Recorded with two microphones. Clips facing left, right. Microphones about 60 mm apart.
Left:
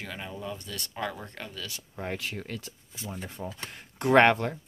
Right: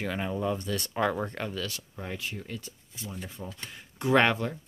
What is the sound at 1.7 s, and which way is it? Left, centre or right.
Speech, left.